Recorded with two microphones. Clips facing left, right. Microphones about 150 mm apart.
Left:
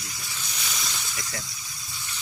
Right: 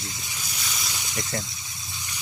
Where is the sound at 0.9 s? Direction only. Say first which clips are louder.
Right 5 dB; 15° right (ahead or behind).